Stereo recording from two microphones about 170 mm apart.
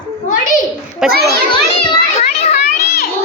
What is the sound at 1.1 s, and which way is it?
Speech, 65° right (ahead or behind).